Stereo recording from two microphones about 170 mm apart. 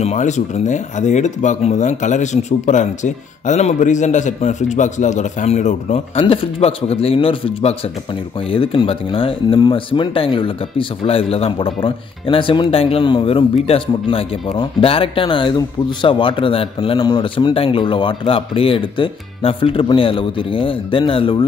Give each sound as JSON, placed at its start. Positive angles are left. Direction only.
{"t": 0.0, "sound": "speech", "side_deg": 45}